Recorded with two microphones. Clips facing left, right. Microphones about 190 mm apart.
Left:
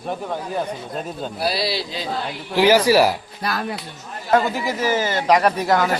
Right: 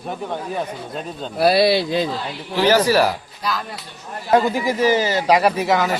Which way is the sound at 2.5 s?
10° left (ahead or behind).